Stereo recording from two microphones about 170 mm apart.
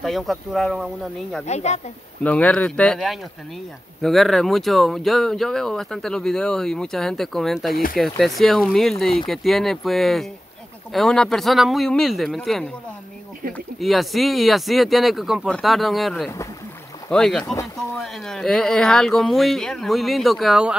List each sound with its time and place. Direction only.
0.0 s speech: centre (ahead or behind)
1.4 s speech: 40° left (ahead or behind)
2.2 s speech: 10° left (ahead or behind)